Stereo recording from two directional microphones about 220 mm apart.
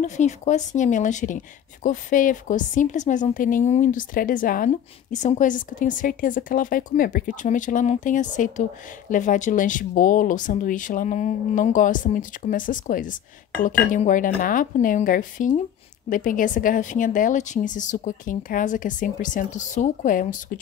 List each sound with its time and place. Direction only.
0.0 s a woman's voice: 35° left (ahead or behind)